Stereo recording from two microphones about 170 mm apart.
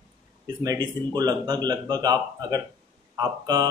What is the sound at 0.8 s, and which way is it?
Speech, 25° right (ahead or behind).